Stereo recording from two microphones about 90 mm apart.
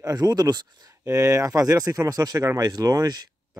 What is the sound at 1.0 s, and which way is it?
Speech, 35° right (ahead or behind).